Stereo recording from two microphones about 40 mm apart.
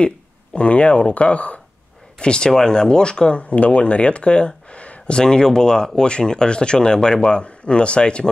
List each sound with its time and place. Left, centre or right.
0.0 s speech: left
2.1 s speech: left
5.1 s speech: centre